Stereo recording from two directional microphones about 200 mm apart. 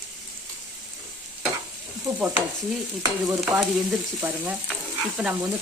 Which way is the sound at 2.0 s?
10° right (ahead or behind).